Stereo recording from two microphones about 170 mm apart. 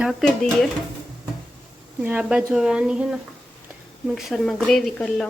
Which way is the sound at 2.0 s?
10° right (ahead or behind).